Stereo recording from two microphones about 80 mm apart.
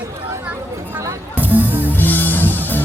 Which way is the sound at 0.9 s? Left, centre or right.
Right.